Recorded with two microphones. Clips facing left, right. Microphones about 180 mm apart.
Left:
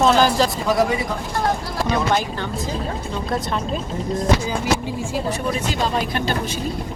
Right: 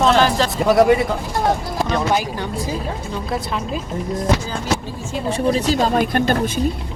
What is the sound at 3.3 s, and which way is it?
Speech, 5° right (ahead or behind).